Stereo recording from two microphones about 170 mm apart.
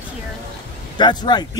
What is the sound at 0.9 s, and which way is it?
Speech, 25° left (ahead or behind).